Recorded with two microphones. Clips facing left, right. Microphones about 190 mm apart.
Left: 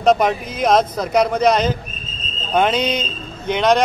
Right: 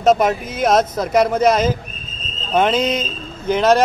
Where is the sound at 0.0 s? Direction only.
5° right (ahead or behind).